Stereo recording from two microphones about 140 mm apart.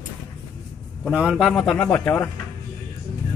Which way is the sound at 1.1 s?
5° right (ahead or behind).